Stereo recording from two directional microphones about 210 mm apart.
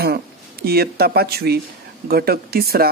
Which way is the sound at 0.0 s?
50° right (ahead or behind).